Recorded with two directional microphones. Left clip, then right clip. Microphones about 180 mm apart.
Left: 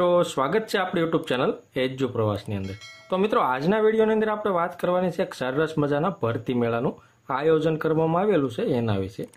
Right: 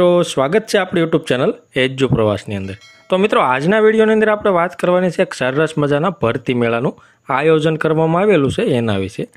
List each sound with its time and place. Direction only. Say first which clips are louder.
0.0 s speech: right 8 dB; 30° right (ahead or behind)